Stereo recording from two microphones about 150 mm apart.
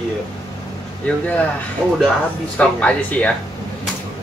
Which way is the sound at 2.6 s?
10° left (ahead or behind).